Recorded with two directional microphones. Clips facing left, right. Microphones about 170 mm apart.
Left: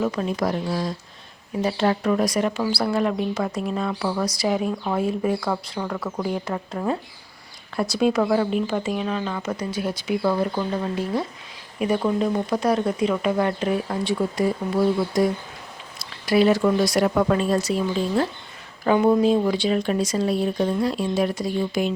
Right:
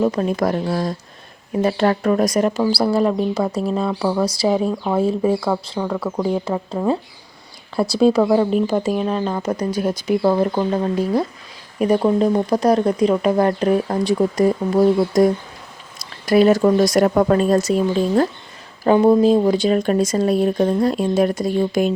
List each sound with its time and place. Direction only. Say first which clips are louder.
0.0 s speech: right 5 dB; 40° right (ahead or behind)
5.8 s speech: right 5 dB; 15° right (ahead or behind)
6.1 s speech: right 6 dB; 30° right (ahead or behind)
7.8 s speech: right 6 dB; 30° right (ahead or behind)
8.2 s speech: right 5 dB; 20° right (ahead or behind)
8.4 s speech: right 5 dB; 40° right (ahead or behind)